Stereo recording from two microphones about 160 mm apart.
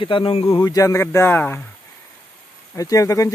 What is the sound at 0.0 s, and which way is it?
Speech, 35° left (ahead or behind).